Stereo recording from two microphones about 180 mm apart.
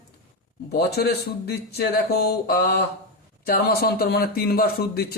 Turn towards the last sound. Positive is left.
turn(degrees=60)  # may be behind; listen again after turning